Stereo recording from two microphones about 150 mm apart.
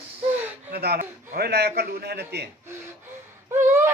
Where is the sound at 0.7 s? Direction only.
90° right.